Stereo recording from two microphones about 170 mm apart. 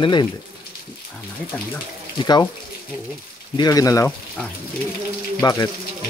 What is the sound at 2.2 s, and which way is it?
Speech, 25° left (ahead or behind).